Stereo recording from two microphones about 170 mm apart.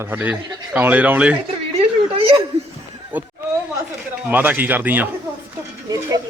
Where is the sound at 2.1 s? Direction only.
30° right (ahead or behind).